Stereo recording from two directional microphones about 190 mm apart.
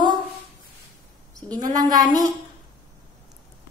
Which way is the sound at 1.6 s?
20° right (ahead or behind).